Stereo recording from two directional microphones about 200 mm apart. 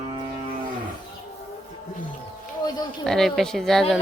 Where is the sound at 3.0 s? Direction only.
Centre (ahead or behind).